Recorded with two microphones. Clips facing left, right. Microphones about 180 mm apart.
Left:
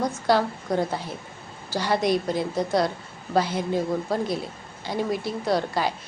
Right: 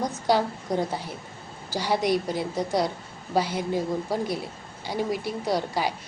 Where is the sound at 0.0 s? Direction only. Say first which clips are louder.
Left 2 dB; 15° right (ahead or behind).